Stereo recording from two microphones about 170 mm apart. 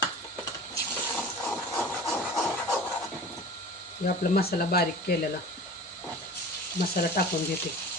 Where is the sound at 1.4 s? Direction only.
5° left (ahead or behind).